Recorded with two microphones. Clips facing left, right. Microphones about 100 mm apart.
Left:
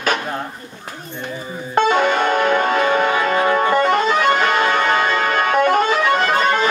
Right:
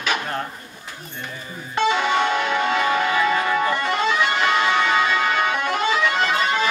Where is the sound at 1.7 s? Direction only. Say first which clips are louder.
Left 4 dB; 50° left (ahead or behind).